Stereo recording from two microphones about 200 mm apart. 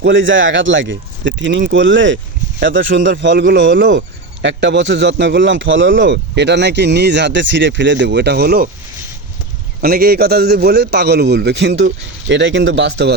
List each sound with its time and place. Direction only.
0.0 s a man's voice: 70° right (ahead or behind); by 8.7 s 50° right (ahead or behind)
9.8 s a man's voice: 50° right (ahead or behind)